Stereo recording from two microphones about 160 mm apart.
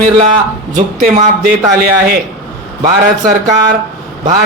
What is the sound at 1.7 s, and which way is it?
Speech, 65° right (ahead or behind).